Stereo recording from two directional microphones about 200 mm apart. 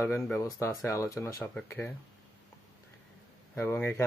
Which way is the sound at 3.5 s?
10° left (ahead or behind).